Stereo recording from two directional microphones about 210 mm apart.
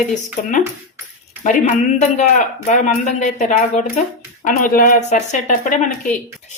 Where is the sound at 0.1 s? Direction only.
35° left (ahead or behind).